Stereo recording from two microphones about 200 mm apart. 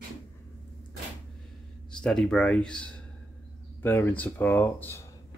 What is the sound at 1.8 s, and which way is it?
Speech, 5° left (ahead or behind).